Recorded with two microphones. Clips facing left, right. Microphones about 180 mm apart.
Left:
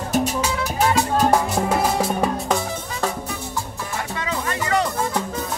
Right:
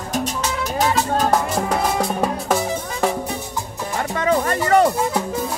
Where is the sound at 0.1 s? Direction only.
10° left (ahead or behind).